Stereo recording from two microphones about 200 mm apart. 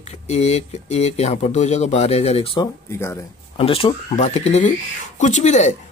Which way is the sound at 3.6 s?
30° left (ahead or behind).